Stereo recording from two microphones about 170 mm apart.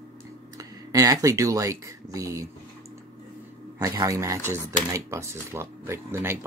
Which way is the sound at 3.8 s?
20° right (ahead or behind).